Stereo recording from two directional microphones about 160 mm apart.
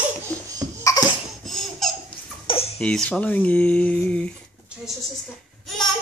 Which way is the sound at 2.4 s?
35° left (ahead or behind).